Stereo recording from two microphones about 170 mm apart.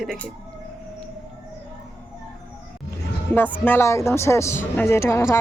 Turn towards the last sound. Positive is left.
turn(degrees=15)  # may be behind; listen again after turning